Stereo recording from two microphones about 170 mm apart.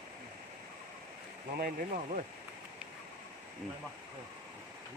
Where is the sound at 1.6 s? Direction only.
55° right (ahead or behind).